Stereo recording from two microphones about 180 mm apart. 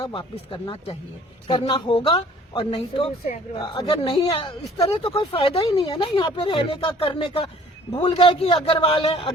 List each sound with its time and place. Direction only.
0.0 s a woman's voice: 25° left (ahead or behind)